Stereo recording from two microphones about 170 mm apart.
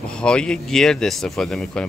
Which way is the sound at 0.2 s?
5° left (ahead or behind).